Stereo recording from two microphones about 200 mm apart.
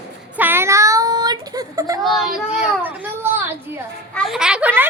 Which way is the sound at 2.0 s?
Centre (ahead or behind).